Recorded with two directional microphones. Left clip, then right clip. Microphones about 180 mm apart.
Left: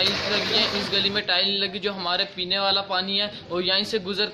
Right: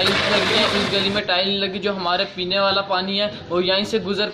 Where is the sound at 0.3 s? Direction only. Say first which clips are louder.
Right 5 dB; 20° left (ahead or behind).